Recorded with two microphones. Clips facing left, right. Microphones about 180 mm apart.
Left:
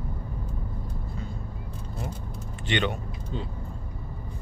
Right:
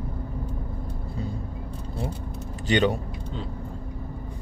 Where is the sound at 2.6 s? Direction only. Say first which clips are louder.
Right 6 dB; 40° right (ahead or behind).